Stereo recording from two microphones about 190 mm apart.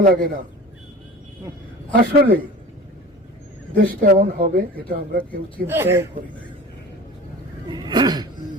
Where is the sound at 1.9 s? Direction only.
50° right (ahead or behind).